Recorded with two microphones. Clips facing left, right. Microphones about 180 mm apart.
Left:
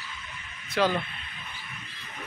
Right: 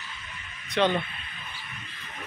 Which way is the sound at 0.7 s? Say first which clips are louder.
Right 1 dB; 5° left (ahead or behind).